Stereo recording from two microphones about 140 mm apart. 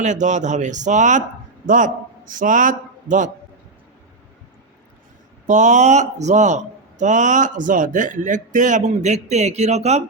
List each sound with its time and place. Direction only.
0.0 s a man's voice: 60° right (ahead or behind)
5.5 s a man's voice: 60° right (ahead or behind)